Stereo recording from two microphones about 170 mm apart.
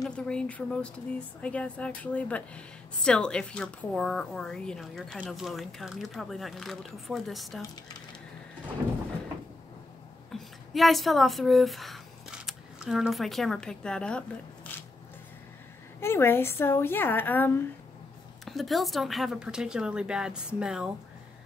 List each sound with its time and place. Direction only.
0.0 s speech: 5° left (ahead or behind)
10.3 s a woman's voice: centre (ahead or behind)
16.0 s speech: 15° left (ahead or behind)
18.4 s speech: centre (ahead or behind)